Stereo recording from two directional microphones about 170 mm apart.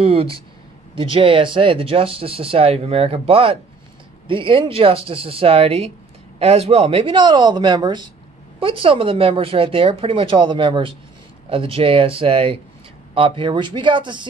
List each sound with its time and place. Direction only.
0.0 s speech: 35° right (ahead or behind)